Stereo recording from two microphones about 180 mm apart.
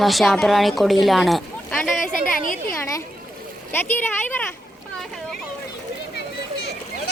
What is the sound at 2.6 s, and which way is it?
Speech, 15° left (ahead or behind).